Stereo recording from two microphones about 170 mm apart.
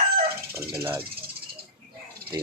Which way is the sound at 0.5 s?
15° right (ahead or behind).